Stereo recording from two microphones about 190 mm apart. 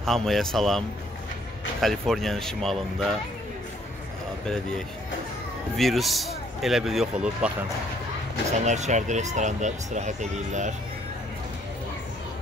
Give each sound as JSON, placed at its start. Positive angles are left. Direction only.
{"t": 0.0, "sound": "a man's voice", "side_deg": 0}
{"t": 5.8, "sound": "a man's voice", "side_deg": 0}
{"t": 8.5, "sound": "speech", "side_deg": -35}